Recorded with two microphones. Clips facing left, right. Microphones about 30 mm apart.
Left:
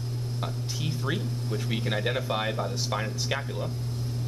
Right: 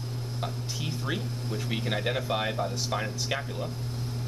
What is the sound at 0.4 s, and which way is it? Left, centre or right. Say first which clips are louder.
Speech: even; centre.